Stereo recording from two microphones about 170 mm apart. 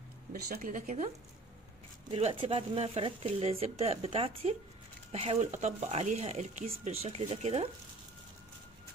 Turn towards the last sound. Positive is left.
turn(degrees=-35)  # may be behind; listen again after turning